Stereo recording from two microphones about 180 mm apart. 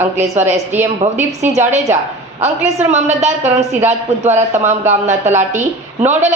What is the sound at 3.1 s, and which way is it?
Speech, 40° right (ahead or behind).